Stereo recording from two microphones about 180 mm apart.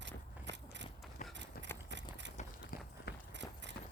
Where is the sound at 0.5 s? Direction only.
75° right (ahead or behind).